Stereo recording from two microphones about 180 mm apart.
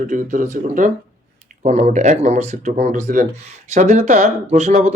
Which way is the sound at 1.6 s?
35° right (ahead or behind).